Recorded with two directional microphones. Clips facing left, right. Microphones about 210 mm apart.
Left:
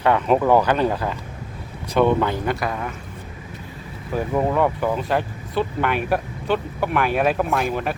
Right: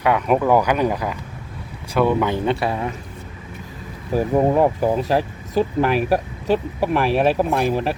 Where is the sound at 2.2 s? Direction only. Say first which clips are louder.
Right 3 dB; 25° right (ahead or behind).